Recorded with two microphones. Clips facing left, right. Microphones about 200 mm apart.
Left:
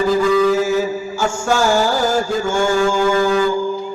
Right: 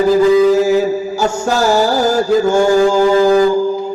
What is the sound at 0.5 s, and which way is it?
Mantra, 40° right (ahead or behind).